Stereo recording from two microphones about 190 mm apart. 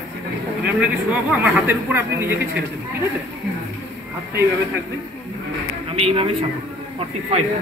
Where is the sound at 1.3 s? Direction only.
10° right (ahead or behind).